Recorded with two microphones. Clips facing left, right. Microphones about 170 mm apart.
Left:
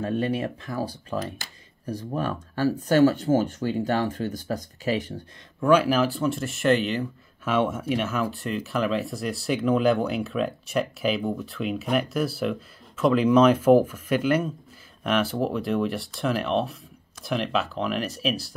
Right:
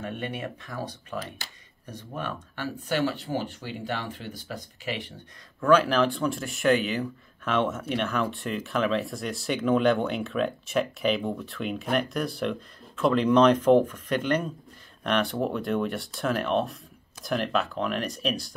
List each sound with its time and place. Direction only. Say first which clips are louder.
0.0 s speech: left 7 dB; 35° left (ahead or behind)
5.6 s speech: left 1 dB; 10° left (ahead or behind)